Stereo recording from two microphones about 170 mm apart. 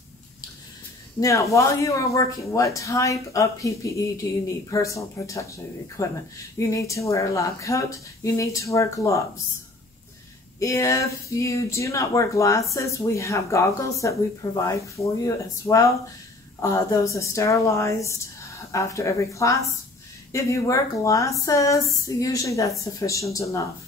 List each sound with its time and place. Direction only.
1.2 s speech: 20° left (ahead or behind)
10.6 s speech: 20° left (ahead or behind)